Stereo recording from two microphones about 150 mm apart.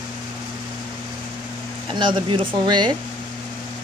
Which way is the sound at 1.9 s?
35° right (ahead or behind).